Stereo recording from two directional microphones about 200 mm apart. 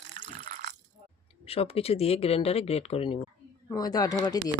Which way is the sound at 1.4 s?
30° left (ahead or behind).